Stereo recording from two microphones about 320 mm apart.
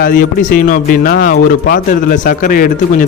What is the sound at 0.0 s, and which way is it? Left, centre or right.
A man's voice, left.